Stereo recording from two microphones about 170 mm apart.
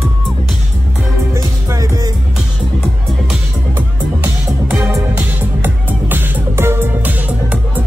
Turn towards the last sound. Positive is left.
turn(degrees=-10)  # may be behind; listen again after turning